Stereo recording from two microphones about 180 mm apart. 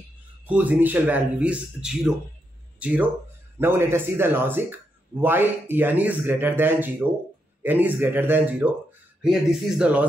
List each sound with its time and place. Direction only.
0.5 s speech: 10° right (ahead or behind)